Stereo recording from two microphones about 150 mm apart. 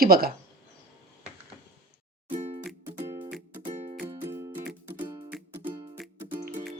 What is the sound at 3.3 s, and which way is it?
Music, 5° right (ahead or behind).